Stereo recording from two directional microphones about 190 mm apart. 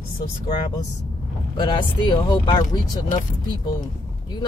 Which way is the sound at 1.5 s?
25° left (ahead or behind).